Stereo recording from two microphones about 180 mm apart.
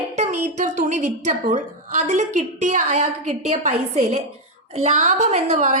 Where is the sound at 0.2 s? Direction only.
40° right (ahead or behind).